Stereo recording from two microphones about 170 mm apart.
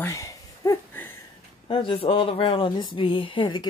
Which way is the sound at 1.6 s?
35° left (ahead or behind).